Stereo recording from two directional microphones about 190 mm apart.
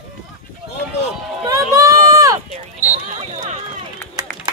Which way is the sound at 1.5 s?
20° right (ahead or behind).